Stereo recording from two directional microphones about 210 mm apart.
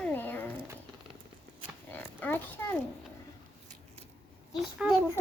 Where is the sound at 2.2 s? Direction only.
10° left (ahead or behind).